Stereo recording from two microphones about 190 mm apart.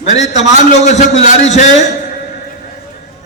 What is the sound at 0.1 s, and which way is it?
A man's voice, 35° left (ahead or behind).